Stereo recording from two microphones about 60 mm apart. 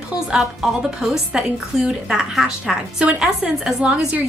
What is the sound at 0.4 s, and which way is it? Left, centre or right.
A woman's voice, centre.